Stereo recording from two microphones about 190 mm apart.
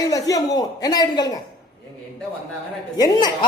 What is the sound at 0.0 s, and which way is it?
A man's voice, 20° left (ahead or behind).